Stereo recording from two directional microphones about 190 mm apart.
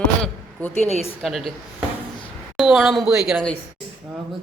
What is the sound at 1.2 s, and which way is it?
Speech, centre (ahead or behind).